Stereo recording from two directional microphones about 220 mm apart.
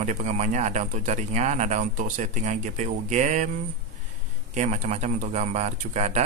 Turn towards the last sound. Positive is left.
turn(degrees=-30)  # may be behind; listen again after turning